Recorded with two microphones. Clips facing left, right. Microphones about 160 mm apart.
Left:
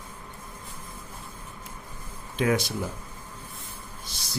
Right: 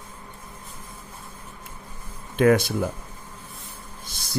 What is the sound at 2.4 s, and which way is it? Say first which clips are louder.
Speech: right 7 dB; 55° right (ahead or behind).